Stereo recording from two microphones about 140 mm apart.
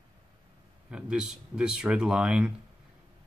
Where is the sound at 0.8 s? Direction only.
5° right (ahead or behind).